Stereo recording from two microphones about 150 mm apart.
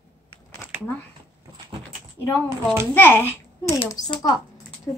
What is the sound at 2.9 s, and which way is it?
Speech, 15° left (ahead or behind).